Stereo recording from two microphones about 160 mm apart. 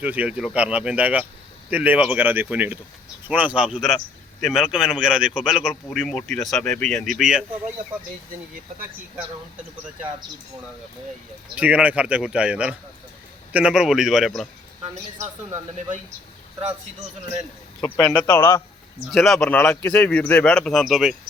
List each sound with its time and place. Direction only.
0.0 s a man's voice: 10° right (ahead or behind)
11.5 s a man's voice: 10° right (ahead or behind)
17.7 s a man's voice: 20° left (ahead or behind)
19.1 s a man's voice: centre (ahead or behind)